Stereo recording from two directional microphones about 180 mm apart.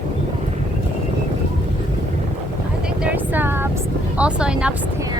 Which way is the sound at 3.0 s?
10° right (ahead or behind).